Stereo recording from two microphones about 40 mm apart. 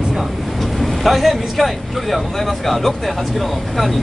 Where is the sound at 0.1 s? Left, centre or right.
Centre.